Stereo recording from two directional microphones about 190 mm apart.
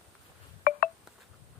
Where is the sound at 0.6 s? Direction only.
45° left (ahead or behind).